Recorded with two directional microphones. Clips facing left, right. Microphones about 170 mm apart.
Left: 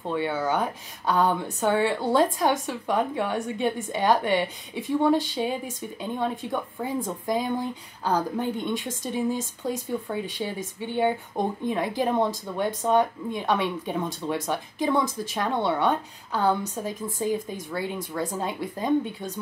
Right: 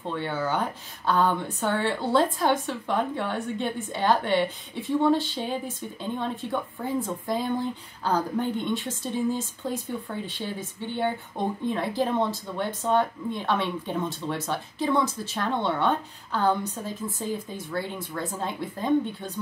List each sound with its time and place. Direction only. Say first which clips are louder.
0.1 s speech: left 3 dB; 10° left (ahead or behind)